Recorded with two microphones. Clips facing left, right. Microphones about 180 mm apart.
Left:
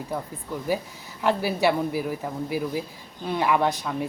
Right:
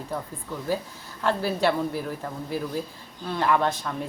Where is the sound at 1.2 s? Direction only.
15° left (ahead or behind).